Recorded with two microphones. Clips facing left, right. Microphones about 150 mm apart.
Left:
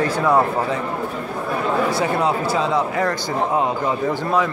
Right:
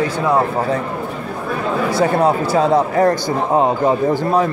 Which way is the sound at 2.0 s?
45° right (ahead or behind).